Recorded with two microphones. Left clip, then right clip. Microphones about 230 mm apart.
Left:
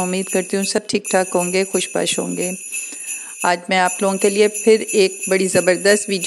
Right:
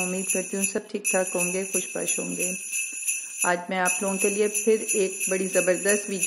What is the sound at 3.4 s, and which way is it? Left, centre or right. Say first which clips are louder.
Jingle bell: left 8 dB; left.